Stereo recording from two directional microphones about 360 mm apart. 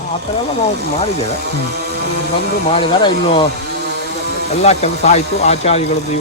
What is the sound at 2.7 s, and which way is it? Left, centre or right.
Speech, centre.